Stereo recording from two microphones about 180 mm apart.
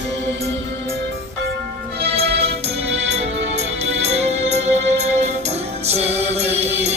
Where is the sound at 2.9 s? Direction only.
35° right (ahead or behind).